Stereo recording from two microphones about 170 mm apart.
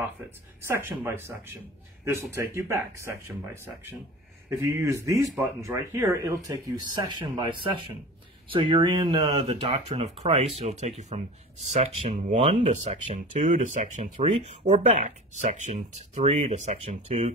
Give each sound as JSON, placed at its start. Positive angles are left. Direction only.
{"t": 0.6, "sound": "speech", "side_deg": -15}
{"t": 4.5, "sound": "speech", "side_deg": -15}
{"t": 14.1, "sound": "speech", "side_deg": -35}